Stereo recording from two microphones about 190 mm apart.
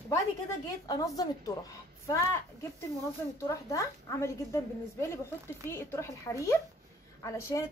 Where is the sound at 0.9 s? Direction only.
20° left (ahead or behind).